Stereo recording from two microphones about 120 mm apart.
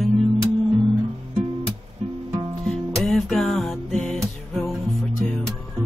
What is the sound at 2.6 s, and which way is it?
Music, 5° left (ahead or behind).